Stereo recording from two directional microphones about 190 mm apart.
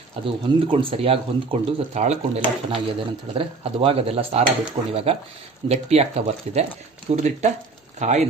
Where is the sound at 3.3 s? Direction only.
30° right (ahead or behind).